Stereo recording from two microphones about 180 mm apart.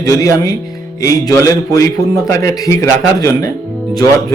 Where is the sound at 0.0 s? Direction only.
20° left (ahead or behind).